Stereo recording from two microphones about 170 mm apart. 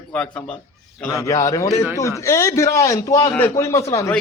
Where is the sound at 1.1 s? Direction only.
20° left (ahead or behind).